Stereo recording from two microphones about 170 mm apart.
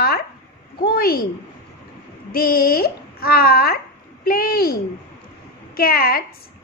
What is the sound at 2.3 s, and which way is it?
A woman's voice, 60° left (ahead or behind).